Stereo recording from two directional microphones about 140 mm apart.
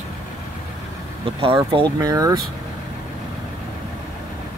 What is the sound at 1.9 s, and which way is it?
Speech, 25° right (ahead or behind).